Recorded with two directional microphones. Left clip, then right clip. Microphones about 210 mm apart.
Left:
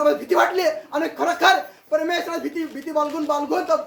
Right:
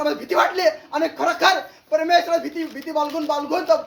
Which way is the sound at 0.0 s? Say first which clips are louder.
Left 2 dB; 15° left (ahead or behind).